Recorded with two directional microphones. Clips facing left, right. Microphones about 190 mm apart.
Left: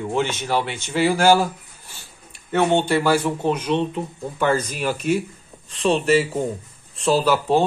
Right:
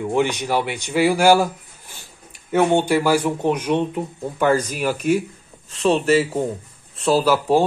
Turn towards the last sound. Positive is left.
turn(degrees=-10)  # may be behind; listen again after turning